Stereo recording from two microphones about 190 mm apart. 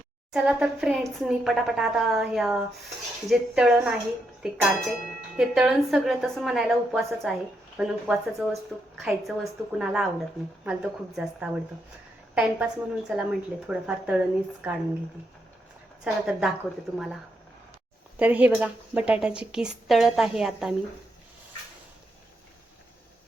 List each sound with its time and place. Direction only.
0.3 s a woman's voice: 5° right (ahead or behind)
16.0 s a woman's voice: 5° right (ahead or behind)
18.2 s a woman's voice: 10° right (ahead or behind)